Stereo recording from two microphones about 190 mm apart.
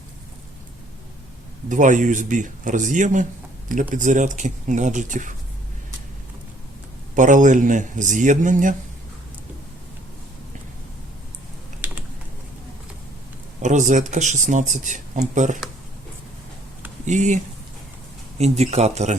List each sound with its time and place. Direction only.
1.7 s speech: 40° right (ahead or behind)
7.2 s speech: 40° right (ahead or behind)
11.8 s typing: 10° right (ahead or behind)
13.6 s speech: 40° right (ahead or behind)
17.1 s speech: 40° right (ahead or behind)